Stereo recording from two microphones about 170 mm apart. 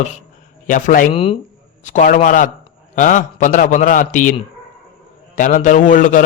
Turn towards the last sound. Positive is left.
turn(degrees=50)  # may be behind; listen again after turning